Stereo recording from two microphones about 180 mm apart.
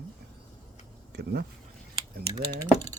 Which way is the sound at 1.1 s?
60° right (ahead or behind).